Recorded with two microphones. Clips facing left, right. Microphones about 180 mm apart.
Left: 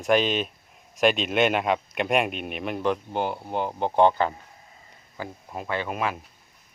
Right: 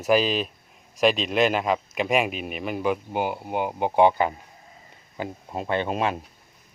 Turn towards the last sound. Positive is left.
turn(degrees=-25)  # may be behind; listen again after turning